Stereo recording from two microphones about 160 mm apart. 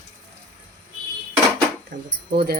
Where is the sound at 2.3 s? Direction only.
75° right (ahead or behind).